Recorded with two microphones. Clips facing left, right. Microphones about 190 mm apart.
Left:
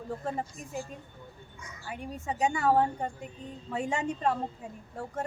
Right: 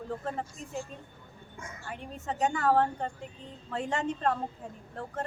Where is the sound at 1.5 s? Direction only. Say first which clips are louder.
Right 8 dB; 50° right (ahead or behind).